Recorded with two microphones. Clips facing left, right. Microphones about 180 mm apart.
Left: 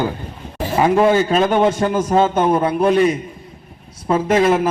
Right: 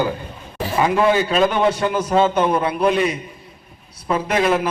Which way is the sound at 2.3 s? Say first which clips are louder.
Left 2 dB; 25° left (ahead or behind).